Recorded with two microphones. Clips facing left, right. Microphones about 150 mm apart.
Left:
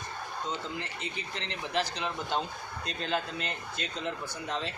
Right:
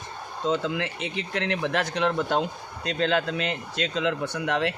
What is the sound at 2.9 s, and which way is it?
Speech, 90° right.